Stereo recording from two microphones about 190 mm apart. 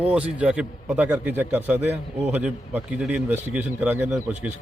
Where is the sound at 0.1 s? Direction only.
5° right (ahead or behind).